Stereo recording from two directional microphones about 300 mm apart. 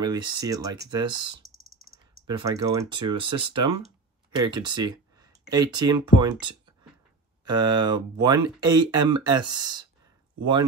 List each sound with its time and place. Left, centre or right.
0.0 s speech: centre
7.4 s speech: centre